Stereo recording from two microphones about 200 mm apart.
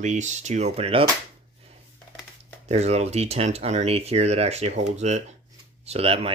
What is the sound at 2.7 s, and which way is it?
Speech, 35° right (ahead or behind).